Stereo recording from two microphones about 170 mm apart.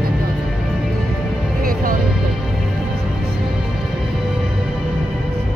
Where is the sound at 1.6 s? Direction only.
55° right (ahead or behind).